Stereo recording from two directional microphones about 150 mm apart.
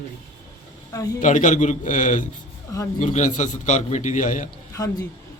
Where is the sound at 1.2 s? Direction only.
60° left (ahead or behind).